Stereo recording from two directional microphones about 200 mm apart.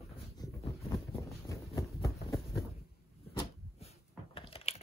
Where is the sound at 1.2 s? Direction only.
15° left (ahead or behind).